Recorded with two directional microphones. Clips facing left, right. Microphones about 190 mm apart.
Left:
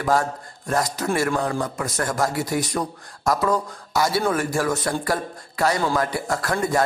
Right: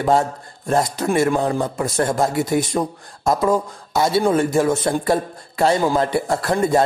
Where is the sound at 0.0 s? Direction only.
25° right (ahead or behind).